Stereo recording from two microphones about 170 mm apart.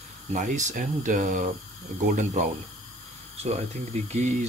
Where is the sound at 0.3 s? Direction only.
50° right (ahead or behind).